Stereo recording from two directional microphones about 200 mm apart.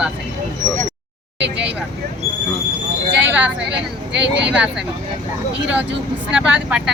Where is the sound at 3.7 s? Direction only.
60° right (ahead or behind).